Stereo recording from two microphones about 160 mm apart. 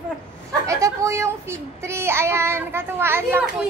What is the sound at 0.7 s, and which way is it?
A child's voice, 20° right (ahead or behind).